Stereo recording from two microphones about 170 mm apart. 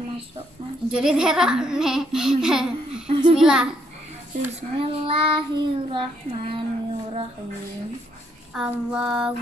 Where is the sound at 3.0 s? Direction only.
30° right (ahead or behind).